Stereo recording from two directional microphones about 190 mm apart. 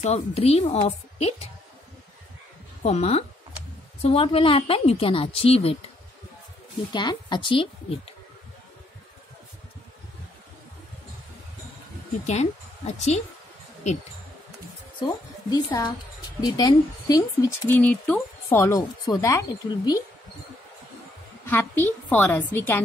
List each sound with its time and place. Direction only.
0.0 s a woman's voice: 35° left (ahead or behind)
2.8 s a woman's voice: 35° left (ahead or behind)
6.9 s a woman's voice: 25° left (ahead or behind)
12.3 s a woman's voice: 35° left (ahead or behind)
15.5 s a woman's voice: 20° left (ahead or behind)
21.5 s speech: 10° left (ahead or behind)